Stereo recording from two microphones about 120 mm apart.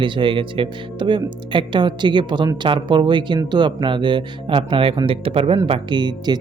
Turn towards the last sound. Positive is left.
turn(degrees=-35)  # may be behind; listen again after turning